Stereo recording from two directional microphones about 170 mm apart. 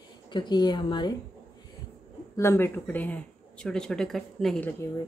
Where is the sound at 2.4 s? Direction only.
15° left (ahead or behind).